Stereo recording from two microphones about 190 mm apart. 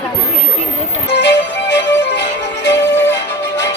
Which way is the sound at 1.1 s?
70° left (ahead or behind).